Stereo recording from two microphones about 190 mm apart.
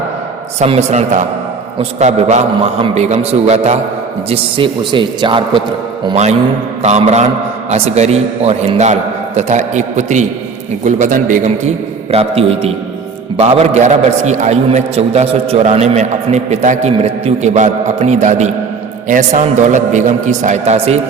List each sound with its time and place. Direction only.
0.6 s a man's voice: 35° right (ahead or behind)
6.8 s a man's voice: 35° right (ahead or behind)